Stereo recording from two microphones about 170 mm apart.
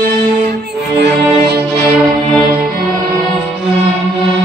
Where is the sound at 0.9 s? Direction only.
75° right (ahead or behind).